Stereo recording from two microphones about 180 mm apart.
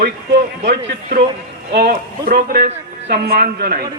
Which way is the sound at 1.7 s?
65° right (ahead or behind).